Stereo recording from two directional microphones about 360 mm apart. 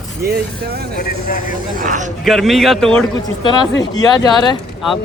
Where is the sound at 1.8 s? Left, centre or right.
Right.